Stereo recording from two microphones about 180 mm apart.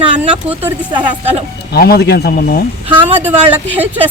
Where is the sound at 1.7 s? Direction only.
60° left (ahead or behind).